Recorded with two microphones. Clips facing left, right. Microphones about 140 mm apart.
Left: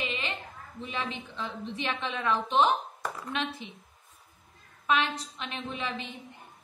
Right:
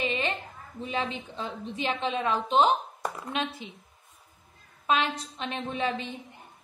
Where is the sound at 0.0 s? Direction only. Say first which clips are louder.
Right 5 dB; 40° right (ahead or behind).